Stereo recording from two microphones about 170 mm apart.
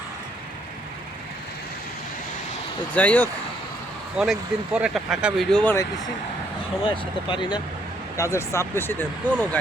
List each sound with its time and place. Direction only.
2.9 s speech: 10° left (ahead or behind)
4.2 s speech: 5° right (ahead or behind)
6.8 s speech: 30° left (ahead or behind); by 9.3 s 15° left (ahead or behind)